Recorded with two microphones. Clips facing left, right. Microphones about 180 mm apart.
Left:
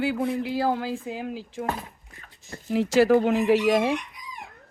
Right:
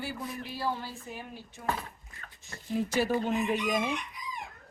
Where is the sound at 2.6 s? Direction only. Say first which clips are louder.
Left 9 dB; 90° left.